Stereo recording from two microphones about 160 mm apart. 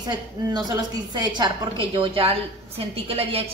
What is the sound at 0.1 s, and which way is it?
A woman's voice, 25° right (ahead or behind).